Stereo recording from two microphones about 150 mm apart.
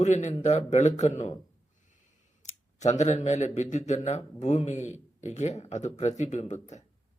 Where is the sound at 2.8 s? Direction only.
50° left (ahead or behind).